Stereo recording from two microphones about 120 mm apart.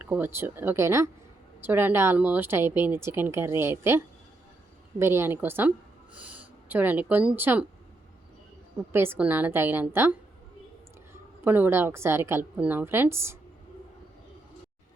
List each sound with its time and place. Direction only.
0.0 s speech: 15° right (ahead or behind)
8.9 s speech: 20° right (ahead or behind)